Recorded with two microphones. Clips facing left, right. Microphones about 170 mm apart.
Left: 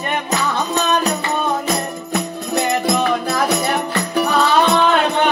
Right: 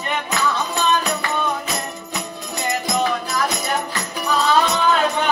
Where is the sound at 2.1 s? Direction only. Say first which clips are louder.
Left 12 dB; 60° left (ahead or behind).